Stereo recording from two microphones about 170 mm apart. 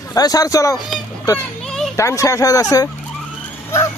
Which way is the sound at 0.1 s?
20° left (ahead or behind).